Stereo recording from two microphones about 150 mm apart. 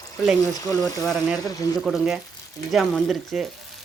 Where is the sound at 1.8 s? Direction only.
Centre (ahead or behind).